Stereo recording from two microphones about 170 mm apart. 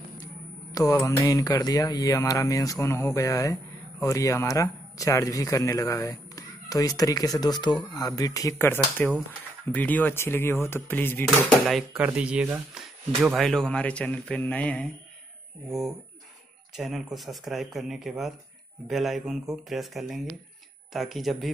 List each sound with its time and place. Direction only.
0.7 s a man's voice: 20° left (ahead or behind)
11.2 s a man's voice: centre (ahead or behind)
16.7 s speech: centre (ahead or behind)